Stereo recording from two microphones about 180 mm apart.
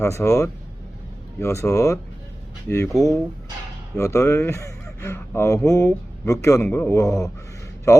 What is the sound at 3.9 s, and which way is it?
A man's voice, 15° left (ahead or behind).